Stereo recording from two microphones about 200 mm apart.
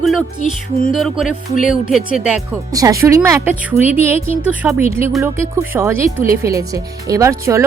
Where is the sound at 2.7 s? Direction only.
15° right (ahead or behind).